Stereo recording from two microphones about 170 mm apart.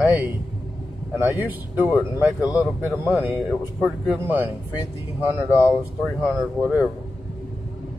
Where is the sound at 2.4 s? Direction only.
20° left (ahead or behind).